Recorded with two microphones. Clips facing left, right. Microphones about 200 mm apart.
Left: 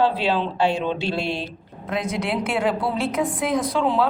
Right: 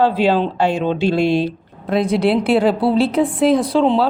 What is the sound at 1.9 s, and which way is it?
A woman's voice, 35° right (ahead or behind).